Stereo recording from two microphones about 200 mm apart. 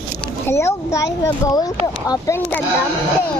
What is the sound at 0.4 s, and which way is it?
Speech, 15° left (ahead or behind).